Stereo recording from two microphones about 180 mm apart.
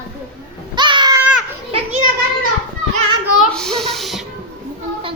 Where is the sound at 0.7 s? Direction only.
25° right (ahead or behind).